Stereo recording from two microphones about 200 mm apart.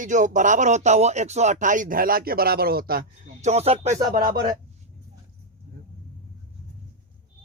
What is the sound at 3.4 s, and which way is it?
Speech, 30° right (ahead or behind).